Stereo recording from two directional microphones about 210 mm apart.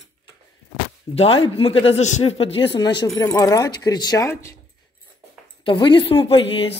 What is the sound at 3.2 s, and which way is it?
Speech, 15° left (ahead or behind).